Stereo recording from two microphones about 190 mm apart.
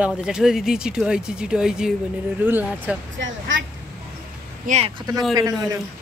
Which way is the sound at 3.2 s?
80° right.